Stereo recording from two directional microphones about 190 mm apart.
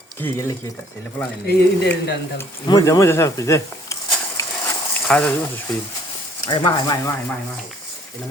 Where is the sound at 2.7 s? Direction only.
20° left (ahead or behind).